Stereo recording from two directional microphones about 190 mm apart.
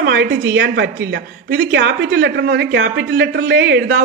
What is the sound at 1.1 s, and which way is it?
A woman's voice, 70° right (ahead or behind).